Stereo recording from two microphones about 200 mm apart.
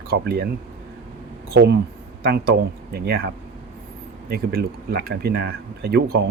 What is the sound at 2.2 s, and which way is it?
Speech, 50° right (ahead or behind).